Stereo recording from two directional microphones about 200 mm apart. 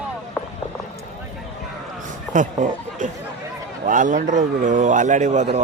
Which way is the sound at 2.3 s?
40° right (ahead or behind).